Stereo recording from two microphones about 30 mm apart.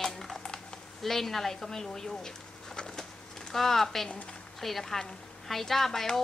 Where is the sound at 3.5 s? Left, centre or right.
Centre.